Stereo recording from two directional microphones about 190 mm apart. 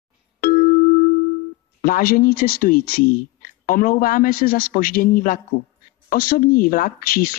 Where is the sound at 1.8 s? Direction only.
50° left (ahead or behind).